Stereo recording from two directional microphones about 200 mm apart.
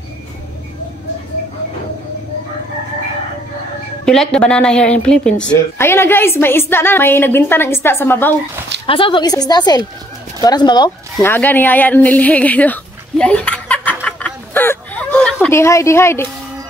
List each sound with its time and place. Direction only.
4.0 s a woman's voice: 5° left (ahead or behind)
8.8 s a woman's voice: 25° left (ahead or behind)
11.2 s a woman's voice: 10° left (ahead or behind)
13.2 s a sound: 5° left (ahead or behind)
15.4 s a woman's voice: 15° left (ahead or behind)